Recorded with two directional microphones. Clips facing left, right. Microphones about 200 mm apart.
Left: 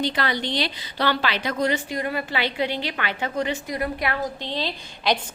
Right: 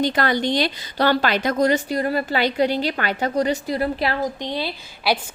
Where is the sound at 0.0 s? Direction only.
45° right (ahead or behind); by 4.2 s 30° right (ahead or behind).